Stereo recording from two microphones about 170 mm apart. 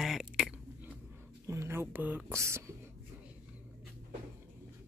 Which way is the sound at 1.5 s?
15° right (ahead or behind).